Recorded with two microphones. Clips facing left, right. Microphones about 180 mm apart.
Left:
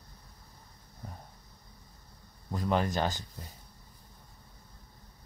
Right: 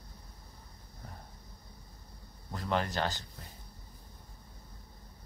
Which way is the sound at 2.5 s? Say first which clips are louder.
Left 3 dB; 15° left (ahead or behind).